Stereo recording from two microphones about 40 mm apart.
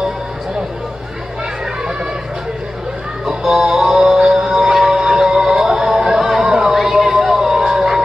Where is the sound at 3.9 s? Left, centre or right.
Centre.